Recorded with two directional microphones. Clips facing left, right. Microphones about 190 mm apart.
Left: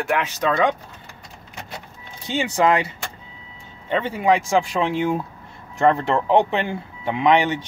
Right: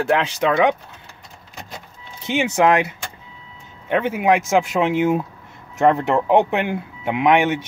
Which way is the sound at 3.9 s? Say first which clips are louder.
Right 2 dB; 15° right (ahead or behind).